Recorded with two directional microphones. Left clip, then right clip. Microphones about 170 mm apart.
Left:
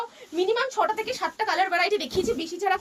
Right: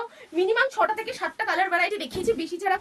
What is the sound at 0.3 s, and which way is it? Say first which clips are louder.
A woman's voice: right 2 dB; 20° right (ahead or behind).